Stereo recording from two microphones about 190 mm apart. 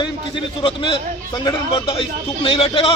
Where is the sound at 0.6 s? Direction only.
25° left (ahead or behind).